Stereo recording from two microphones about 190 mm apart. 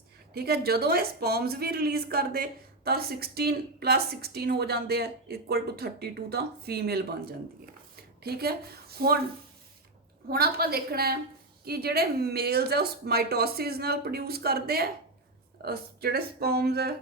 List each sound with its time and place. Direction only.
0.3 s a woman's voice: 55° right (ahead or behind)
10.2 s a woman's voice: 55° right (ahead or behind)